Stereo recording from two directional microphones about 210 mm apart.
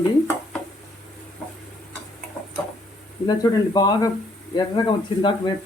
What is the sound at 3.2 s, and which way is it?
Speech, 20° left (ahead or behind).